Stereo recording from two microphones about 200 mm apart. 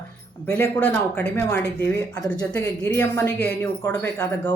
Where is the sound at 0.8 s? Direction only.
5° left (ahead or behind).